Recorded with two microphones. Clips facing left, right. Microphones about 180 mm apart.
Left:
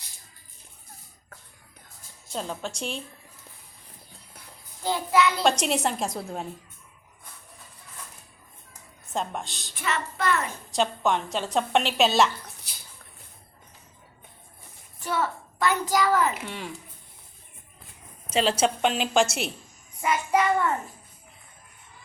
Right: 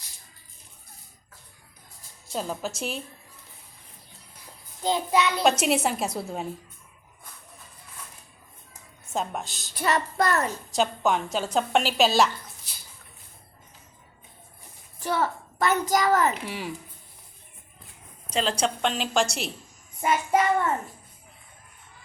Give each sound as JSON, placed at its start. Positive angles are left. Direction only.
{"t": 2.3, "sound": "a woman's voice", "side_deg": -5}
{"t": 4.8, "sound": "a child's voice", "side_deg": -20}
{"t": 5.4, "sound": "a woman's voice", "side_deg": -5}
{"t": 9.1, "sound": "a woman's voice", "side_deg": 0}
{"t": 9.7, "sound": "speech", "side_deg": -40}
{"t": 10.7, "sound": "a woman's voice", "side_deg": 0}
{"t": 15.1, "sound": "a sound", "side_deg": -40}
{"t": 16.5, "sound": "a woman's voice", "side_deg": -5}
{"t": 18.3, "sound": "a woman's voice", "side_deg": 5}
{"t": 20.0, "sound": "a child's voice", "side_deg": -30}